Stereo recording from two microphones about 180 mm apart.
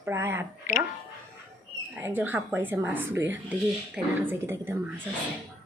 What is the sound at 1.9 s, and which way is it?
Speech, 10° right (ahead or behind).